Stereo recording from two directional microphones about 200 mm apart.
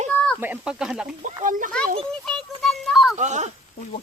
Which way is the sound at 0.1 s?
5° left (ahead or behind).